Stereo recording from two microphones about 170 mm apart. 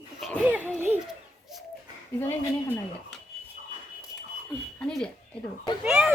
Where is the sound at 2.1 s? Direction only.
10° left (ahead or behind).